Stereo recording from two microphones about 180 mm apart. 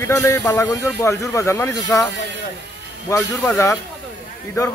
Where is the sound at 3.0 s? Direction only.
15° left (ahead or behind).